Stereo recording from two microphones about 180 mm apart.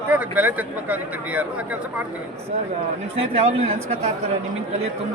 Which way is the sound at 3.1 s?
35° right (ahead or behind).